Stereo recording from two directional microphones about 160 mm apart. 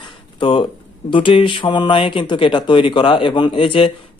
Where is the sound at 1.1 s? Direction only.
30° left (ahead or behind).